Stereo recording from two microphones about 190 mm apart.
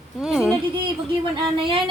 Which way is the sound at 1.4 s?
25° right (ahead or behind).